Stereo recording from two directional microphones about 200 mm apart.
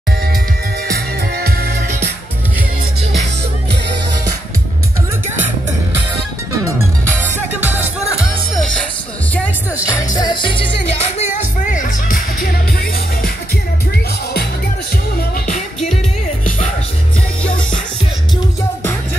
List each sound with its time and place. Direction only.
0.9 s music: 50° right (ahead or behind)
7.3 s music: 10° right (ahead or behind)
8.5 s music: 5° left (ahead or behind)
10.1 s music: 20° left (ahead or behind)
11.6 s music: 40° left (ahead or behind)
15.1 s music: 45° left (ahead or behind)